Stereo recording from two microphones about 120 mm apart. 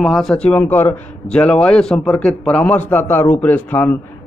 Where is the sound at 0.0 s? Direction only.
5° left (ahead or behind).